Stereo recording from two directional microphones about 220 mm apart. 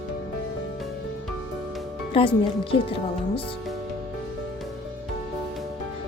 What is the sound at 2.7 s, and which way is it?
Speech, 25° left (ahead or behind).